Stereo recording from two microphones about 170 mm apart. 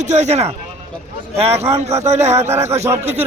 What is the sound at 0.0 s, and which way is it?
A man's voice, 40° right (ahead or behind).